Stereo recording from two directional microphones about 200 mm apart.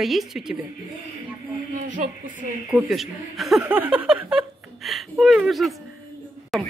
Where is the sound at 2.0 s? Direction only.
35° right (ahead or behind).